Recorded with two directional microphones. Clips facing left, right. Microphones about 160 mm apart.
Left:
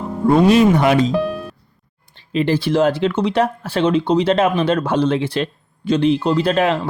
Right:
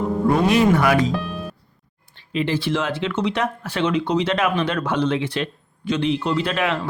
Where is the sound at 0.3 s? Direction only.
25° left (ahead or behind).